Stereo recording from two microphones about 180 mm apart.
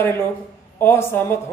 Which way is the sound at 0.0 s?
15° left (ahead or behind).